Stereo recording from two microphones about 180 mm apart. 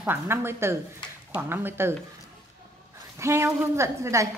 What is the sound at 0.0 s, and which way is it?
A woman's voice, 10° right (ahead or behind).